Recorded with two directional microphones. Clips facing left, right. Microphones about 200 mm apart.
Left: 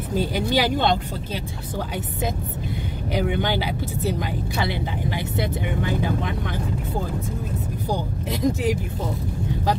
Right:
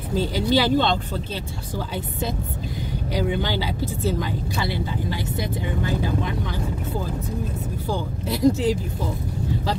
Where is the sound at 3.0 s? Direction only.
20° left (ahead or behind).